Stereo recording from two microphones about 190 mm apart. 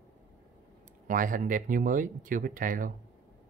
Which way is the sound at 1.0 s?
45° right (ahead or behind).